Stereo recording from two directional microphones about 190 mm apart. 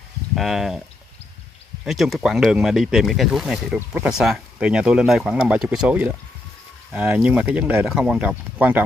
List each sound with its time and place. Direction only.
0.4 s speech: centre (ahead or behind)
1.9 s speech: centre (ahead or behind)